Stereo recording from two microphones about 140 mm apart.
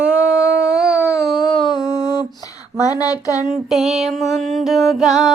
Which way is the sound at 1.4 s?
35° left (ahead or behind).